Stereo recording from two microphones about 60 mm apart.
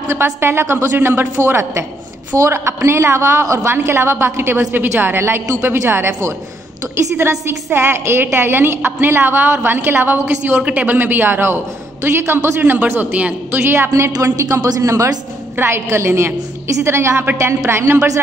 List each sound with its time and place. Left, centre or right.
0.1 s a woman's voice: right
10.6 s a woman's voice: right
14.2 s speech: right
15.5 s a woman's voice: right